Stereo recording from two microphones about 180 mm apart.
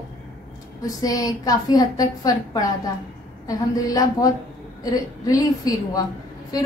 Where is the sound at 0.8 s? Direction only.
20° left (ahead or behind).